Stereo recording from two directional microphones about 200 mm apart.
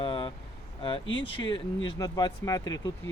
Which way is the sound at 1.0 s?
70° left (ahead or behind).